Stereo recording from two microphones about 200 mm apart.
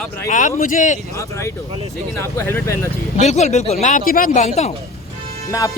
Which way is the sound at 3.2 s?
35° left (ahead or behind).